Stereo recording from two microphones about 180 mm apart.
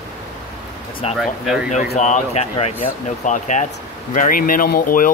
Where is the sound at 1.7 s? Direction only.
40° left (ahead or behind).